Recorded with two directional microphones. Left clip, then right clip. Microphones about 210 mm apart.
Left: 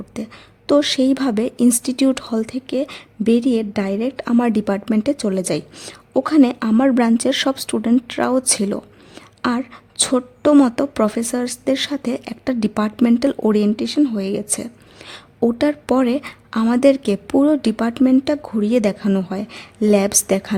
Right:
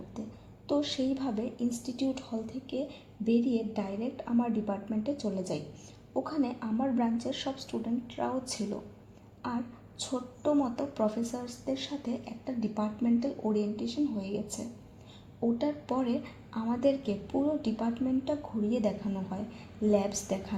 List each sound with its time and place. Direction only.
0.1 s speech: 45° left (ahead or behind)
10.0 s speech: 50° left (ahead or behind)